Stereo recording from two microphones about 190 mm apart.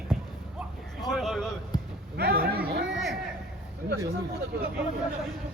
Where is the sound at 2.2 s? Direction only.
55° right (ahead or behind).